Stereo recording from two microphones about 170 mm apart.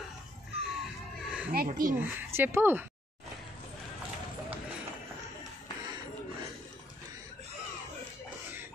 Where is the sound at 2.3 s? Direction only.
15° right (ahead or behind).